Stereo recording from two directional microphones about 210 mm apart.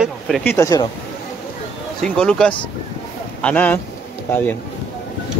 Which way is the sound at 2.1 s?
5° left (ahead or behind).